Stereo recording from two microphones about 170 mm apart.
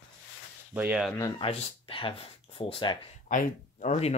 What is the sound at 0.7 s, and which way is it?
Speech, 10° right (ahead or behind).